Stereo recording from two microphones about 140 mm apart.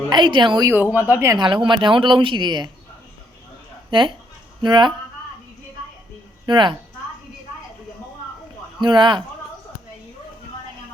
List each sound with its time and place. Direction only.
0.1 s speech: 35° right (ahead or behind)
0.7 s speech: 10° right (ahead or behind)
1.4 s speech: 35° right (ahead or behind)
4.6 s speech: 30° right (ahead or behind)
6.4 s speech: 35° right (ahead or behind)
8.8 s speech: 35° right (ahead or behind)